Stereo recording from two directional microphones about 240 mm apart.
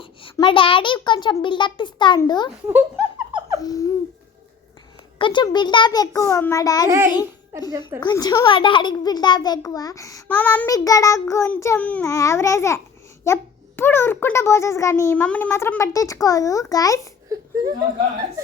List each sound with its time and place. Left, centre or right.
0.0 s a child's voice: left
3.6 s a child's voice: centre
5.1 s a child's voice: centre
6.8 s a child's voice: centre
8.0 s a child's voice: centre
17.2 s whimper: centre